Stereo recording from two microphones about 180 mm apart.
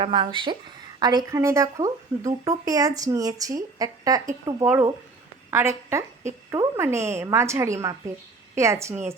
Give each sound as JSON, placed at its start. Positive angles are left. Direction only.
{"t": 0.0, "sound": "a woman's voice", "side_deg": -30}